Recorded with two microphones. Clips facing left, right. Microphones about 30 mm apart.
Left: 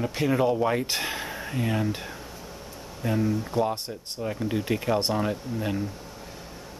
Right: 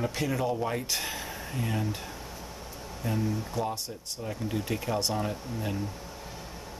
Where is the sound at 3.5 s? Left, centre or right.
Left.